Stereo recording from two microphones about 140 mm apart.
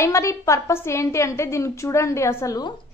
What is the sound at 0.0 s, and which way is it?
A woman's voice, 20° left (ahead or behind).